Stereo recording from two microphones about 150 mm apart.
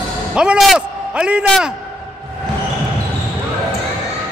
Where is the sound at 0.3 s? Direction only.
5° right (ahead or behind).